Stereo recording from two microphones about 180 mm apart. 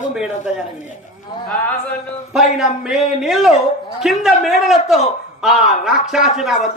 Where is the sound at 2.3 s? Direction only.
Centre (ahead or behind).